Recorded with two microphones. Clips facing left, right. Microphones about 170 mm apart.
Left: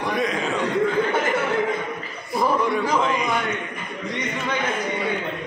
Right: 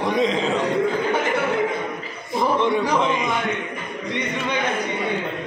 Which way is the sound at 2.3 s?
20° right (ahead or behind).